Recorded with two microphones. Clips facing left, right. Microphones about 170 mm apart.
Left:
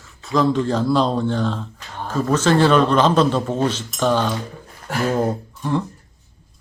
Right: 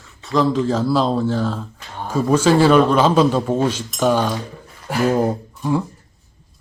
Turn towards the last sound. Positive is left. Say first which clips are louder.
# right 2 dB
turn(degrees=-10)  # may be behind; listen again after turning